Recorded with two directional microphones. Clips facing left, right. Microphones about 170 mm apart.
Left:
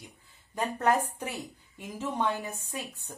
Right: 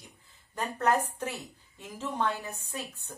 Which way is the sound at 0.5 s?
10° left (ahead or behind).